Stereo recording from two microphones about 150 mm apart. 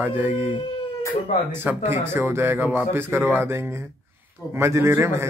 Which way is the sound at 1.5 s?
15° right (ahead or behind).